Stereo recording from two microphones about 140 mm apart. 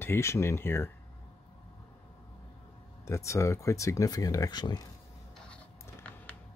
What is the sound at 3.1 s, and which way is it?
Speech, 20° left (ahead or behind).